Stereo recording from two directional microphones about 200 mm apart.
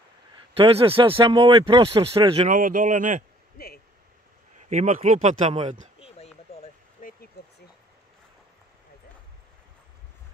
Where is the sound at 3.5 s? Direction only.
50° left (ahead or behind).